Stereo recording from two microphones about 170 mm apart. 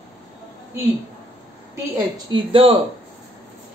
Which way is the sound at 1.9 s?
30° right (ahead or behind).